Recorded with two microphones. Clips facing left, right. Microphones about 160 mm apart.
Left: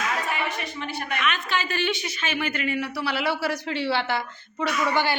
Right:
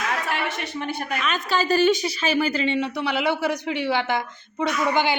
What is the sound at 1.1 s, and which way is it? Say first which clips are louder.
A woman's voice: right 2 dB; 35° right (ahead or behind).